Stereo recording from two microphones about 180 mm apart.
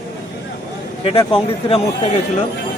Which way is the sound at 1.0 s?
30° left (ahead or behind).